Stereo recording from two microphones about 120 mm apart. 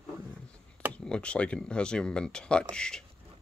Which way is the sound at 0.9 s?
10° left (ahead or behind).